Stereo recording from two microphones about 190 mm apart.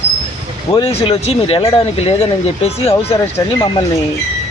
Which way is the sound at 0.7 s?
30° left (ahead or behind).